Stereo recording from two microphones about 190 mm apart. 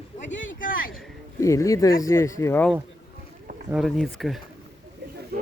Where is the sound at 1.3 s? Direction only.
15° left (ahead or behind).